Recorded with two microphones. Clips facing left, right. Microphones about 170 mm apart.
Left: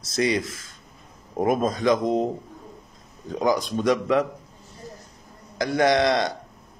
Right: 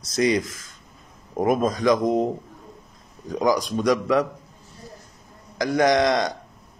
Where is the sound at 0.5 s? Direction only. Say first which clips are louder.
Left 2 dB; 25° left (ahead or behind).